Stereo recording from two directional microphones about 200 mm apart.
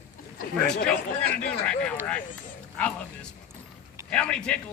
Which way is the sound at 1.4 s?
5° left (ahead or behind).